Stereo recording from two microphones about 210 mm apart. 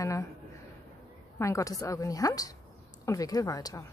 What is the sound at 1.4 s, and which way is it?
Speech, 15° left (ahead or behind).